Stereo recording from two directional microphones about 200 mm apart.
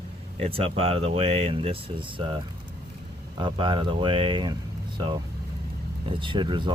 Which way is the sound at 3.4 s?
25° right (ahead or behind).